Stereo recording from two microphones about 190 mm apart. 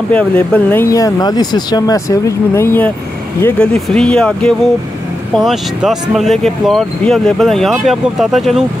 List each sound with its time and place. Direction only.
0.1 s speech: 5° left (ahead or behind)